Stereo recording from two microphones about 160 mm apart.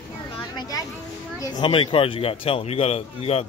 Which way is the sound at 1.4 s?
30° left (ahead or behind).